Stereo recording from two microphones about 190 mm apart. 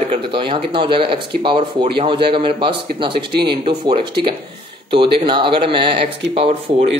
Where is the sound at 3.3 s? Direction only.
60° right (ahead or behind).